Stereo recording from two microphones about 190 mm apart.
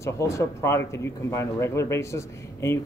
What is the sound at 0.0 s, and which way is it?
Speech, 15° left (ahead or behind).